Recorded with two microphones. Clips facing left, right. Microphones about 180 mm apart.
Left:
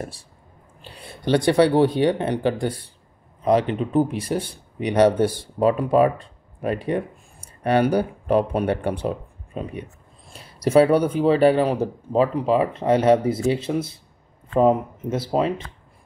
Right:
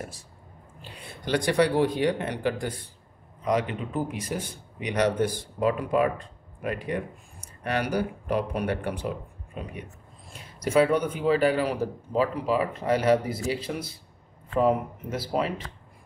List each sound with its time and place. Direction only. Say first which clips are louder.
0.9 s speech: left 7 dB; 30° left (ahead or behind)
10.6 s speech: left 6 dB; 35° left (ahead or behind)